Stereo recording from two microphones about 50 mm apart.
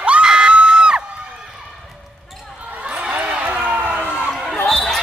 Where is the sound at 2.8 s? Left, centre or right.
Right.